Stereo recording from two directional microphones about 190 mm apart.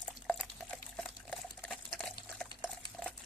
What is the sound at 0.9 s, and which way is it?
Liquid, 5° left (ahead or behind).